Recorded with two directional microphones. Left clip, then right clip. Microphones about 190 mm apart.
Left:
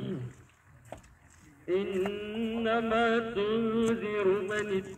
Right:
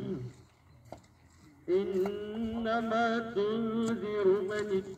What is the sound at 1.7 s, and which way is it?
Mantra, 25° left (ahead or behind).